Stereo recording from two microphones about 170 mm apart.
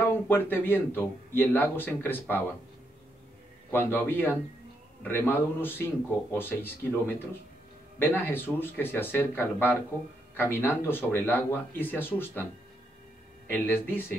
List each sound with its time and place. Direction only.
0.0 s speech: 10° left (ahead or behind)
3.7 s speech: 10° left (ahead or behind)
8.0 s speech: 10° left (ahead or behind)
13.5 s speech: 10° left (ahead or behind)